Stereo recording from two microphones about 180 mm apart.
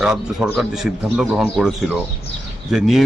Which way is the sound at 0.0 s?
5° right (ahead or behind).